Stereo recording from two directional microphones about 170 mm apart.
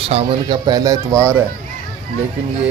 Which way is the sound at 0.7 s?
20° right (ahead or behind).